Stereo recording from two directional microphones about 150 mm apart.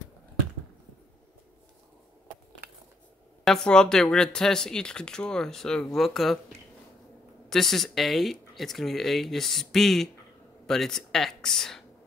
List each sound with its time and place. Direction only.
3.4 s speech: 5° left (ahead or behind)
7.4 s speech: centre (ahead or behind)